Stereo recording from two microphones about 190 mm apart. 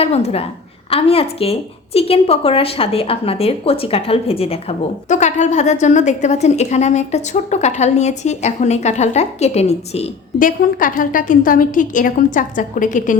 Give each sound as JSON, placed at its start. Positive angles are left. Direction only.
{"t": 0.0, "sound": "a woman's voice", "side_deg": 35}
{"t": 10.3, "sound": "a woman's voice", "side_deg": 45}